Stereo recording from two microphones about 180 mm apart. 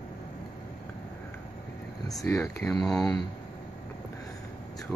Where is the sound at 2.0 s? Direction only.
15° left (ahead or behind).